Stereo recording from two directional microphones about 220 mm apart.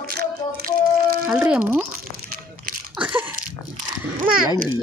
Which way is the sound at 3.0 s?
10° right (ahead or behind).